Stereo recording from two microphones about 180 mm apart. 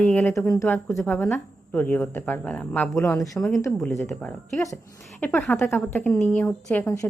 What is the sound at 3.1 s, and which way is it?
Speech, 15° left (ahead or behind).